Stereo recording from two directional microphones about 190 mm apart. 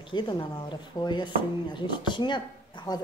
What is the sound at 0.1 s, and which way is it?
Speech, 25° left (ahead or behind).